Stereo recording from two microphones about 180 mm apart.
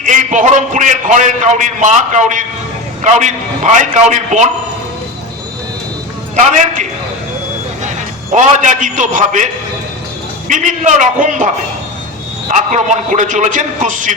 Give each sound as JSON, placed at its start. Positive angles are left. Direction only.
{"t": 0.0, "sound": "a man's voice", "side_deg": -45}
{"t": 6.3, "sound": "a man's voice", "side_deg": -45}
{"t": 8.4, "sound": "a man's voice", "side_deg": -45}
{"t": 10.5, "sound": "a man's voice", "side_deg": -45}